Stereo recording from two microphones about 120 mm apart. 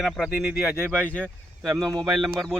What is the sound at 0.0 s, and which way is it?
Speech, 5° right (ahead or behind).